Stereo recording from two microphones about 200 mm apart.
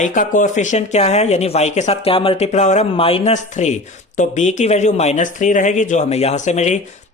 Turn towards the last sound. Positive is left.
turn(degrees=35)  # may be behind; listen again after turning